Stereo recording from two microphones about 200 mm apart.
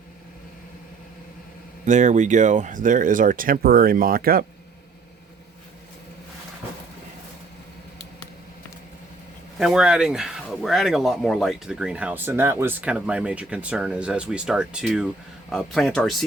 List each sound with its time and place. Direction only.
1.8 s speech: 35° right (ahead or behind)
9.6 s speech: 5° right (ahead or behind)